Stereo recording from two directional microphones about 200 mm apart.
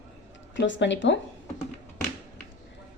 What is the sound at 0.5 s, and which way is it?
Speech, 65° left (ahead or behind).